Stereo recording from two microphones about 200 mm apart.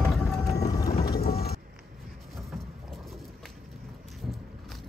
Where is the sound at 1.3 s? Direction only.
50° left (ahead or behind).